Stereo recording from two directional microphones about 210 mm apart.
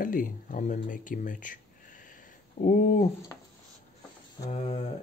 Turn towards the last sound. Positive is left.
turn(degrees=30)  # may be behind; listen again after turning